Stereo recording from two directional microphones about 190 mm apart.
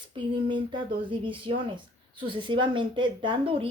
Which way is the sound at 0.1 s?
25° right (ahead or behind).